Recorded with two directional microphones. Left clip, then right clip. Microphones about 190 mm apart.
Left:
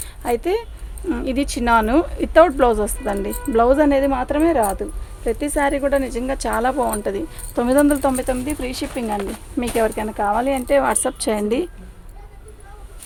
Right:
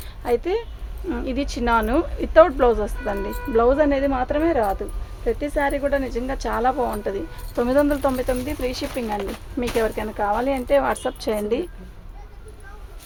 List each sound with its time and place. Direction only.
0.2 s speech: 50° left (ahead or behind)